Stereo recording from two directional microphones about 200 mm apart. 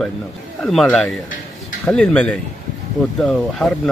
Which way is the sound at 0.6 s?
Centre (ahead or behind).